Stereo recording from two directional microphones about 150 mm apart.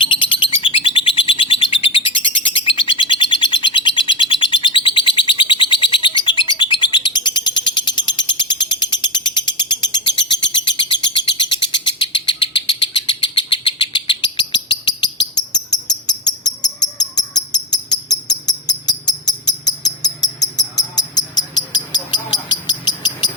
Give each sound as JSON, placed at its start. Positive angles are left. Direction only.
{"t": 0.0, "sound": "bird", "side_deg": 35}
{"t": 22.6, "sound": "cricket", "side_deg": 30}